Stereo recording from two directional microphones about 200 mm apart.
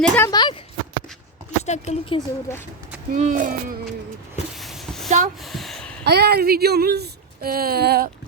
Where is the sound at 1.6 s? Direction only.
35° left (ahead or behind).